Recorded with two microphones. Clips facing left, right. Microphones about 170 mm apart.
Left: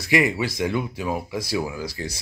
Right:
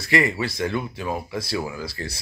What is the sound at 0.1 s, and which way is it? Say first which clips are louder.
Speech: left 1 dB; 15° left (ahead or behind).